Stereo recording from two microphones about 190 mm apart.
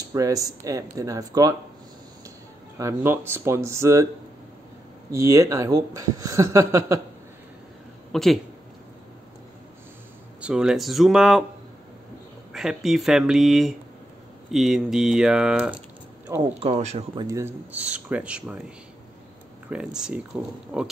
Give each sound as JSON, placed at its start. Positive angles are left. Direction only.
{"t": 0.1, "sound": "speech", "side_deg": -20}
{"t": 2.8, "sound": "speech", "side_deg": -15}
{"t": 5.1, "sound": "speech", "side_deg": -15}
{"t": 8.1, "sound": "speech", "side_deg": 0}
{"t": 10.4, "sound": "speech", "side_deg": -5}
{"t": 12.5, "sound": "speech", "side_deg": 0}
{"t": 16.5, "sound": "speech", "side_deg": -35}
{"t": 17.2, "sound": "speech", "side_deg": -15}
{"t": 19.7, "sound": "speech", "side_deg": -5}